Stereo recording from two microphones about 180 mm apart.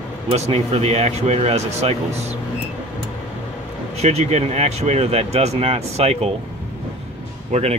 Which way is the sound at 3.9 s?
35° right (ahead or behind).